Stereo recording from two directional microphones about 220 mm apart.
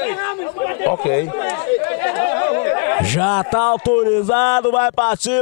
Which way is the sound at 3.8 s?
15° left (ahead or behind).